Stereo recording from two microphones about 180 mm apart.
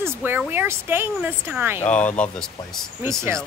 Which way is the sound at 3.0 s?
15° right (ahead or behind).